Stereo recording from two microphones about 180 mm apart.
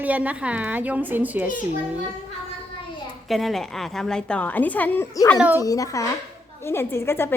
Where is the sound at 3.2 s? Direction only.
Centre (ahead or behind).